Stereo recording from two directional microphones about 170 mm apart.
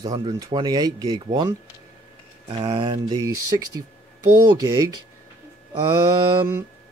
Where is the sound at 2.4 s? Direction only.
35° right (ahead or behind).